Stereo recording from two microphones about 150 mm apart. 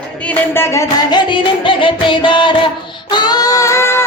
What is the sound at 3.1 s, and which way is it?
Singing, 30° left (ahead or behind).